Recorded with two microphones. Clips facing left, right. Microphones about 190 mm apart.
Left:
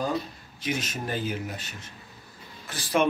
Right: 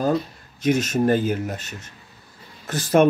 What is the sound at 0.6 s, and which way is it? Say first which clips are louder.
Speech: right 11 dB; 45° right (ahead or behind).